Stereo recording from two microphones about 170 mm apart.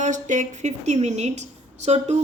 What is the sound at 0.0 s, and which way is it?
A woman's voice, 45° right (ahead or behind).